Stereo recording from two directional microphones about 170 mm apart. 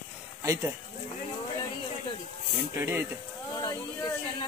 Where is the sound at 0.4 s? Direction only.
15° right (ahead or behind).